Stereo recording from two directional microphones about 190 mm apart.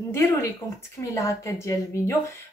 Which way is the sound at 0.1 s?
15° left (ahead or behind).